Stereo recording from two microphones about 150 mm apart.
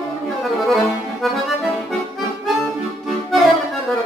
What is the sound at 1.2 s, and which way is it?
Accordion, centre (ahead or behind).